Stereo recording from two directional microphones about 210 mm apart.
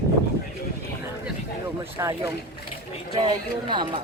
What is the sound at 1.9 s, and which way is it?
Speech, 15° right (ahead or behind).